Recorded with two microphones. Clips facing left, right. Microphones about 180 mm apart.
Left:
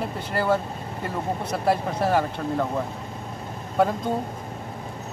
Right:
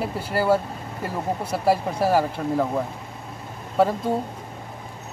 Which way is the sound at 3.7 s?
5° right (ahead or behind).